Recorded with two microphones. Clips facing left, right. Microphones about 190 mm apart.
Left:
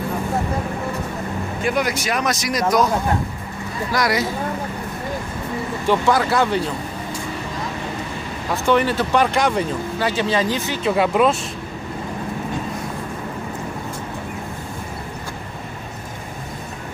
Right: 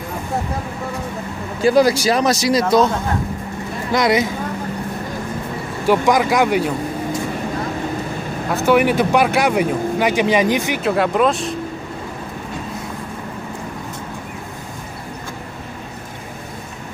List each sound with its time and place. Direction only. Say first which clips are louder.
1.6 s speech: right 9 dB; 35° right (ahead or behind)
3.9 s speech: right 5 dB; 20° right (ahead or behind)
5.9 s speech: right 3 dB; 15° right (ahead or behind)
8.6 s speech: right 4 dB; 10° right (ahead or behind)
10.8 s speech: left 2 dB; centre (ahead or behind)